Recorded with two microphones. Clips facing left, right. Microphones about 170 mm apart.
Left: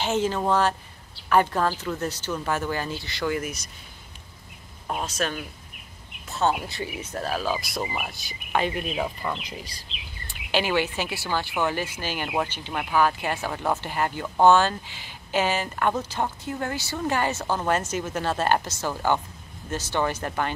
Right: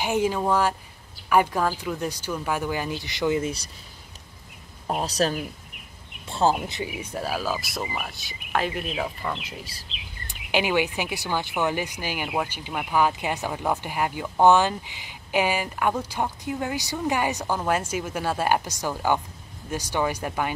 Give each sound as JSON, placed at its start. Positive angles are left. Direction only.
{"t": 0.0, "sound": "speech", "side_deg": -10}
{"t": 4.8, "sound": "speech", "side_deg": -35}
{"t": 6.7, "sound": "speech", "side_deg": -15}
{"t": 10.2, "sound": "speech", "side_deg": -15}